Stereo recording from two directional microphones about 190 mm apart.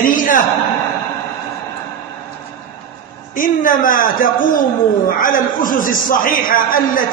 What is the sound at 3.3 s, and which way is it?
A man's voice, 45° left (ahead or behind).